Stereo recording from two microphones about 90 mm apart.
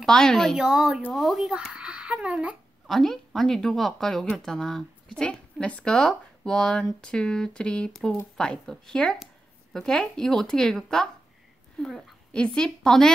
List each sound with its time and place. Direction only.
0.0 s speech: 5° left (ahead or behind)
0.7 s speech: 5° right (ahead or behind)
2.9 s speech: 5° left (ahead or behind)